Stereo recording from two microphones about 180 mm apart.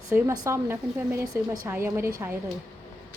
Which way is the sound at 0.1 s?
15° right (ahead or behind).